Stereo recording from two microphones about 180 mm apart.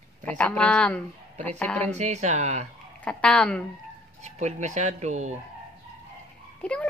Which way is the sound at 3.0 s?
5° left (ahead or behind).